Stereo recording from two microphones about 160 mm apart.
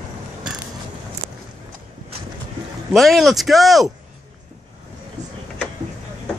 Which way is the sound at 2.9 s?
Centre (ahead or behind).